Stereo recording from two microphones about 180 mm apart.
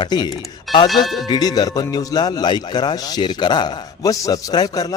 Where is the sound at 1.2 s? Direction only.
20° left (ahead or behind).